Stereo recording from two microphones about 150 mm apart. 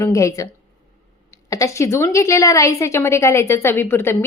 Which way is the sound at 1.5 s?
20° left (ahead or behind).